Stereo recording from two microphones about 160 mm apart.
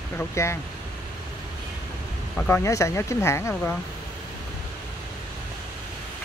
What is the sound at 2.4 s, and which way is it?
Speech, 15° left (ahead or behind).